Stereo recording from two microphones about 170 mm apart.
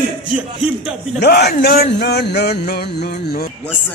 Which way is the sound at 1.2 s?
75° left (ahead or behind).